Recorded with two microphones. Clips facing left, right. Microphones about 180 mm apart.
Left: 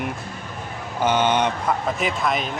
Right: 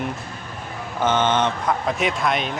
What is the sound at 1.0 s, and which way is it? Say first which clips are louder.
Speech: even; 10° left (ahead or behind).